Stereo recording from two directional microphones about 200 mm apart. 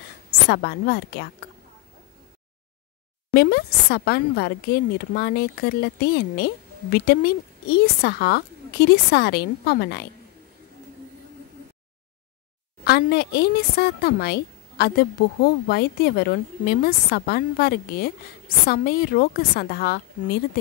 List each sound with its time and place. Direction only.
0.5 s a woman's voice: 55° left (ahead or behind)
3.3 s a woman's voice: 50° left (ahead or behind)
12.8 s a woman's voice: 55° left (ahead or behind)